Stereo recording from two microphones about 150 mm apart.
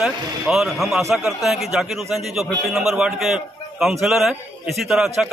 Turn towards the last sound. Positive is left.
turn(degrees=0)  # may be behind; listen again after turning